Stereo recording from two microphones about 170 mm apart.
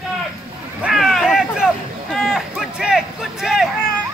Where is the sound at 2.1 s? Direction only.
Centre (ahead or behind).